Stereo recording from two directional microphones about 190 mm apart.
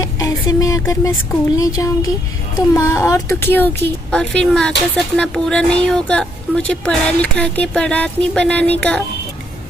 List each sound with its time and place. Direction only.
0.0 s speech: 20° left (ahead or behind)